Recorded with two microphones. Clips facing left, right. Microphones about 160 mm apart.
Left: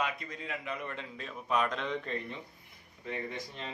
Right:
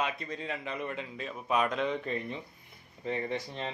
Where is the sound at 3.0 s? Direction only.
30° right (ahead or behind).